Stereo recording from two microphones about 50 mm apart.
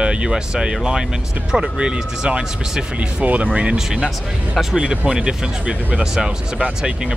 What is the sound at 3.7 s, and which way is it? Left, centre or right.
Speech, centre.